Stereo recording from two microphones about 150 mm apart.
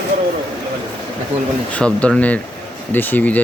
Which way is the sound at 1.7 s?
10° left (ahead or behind).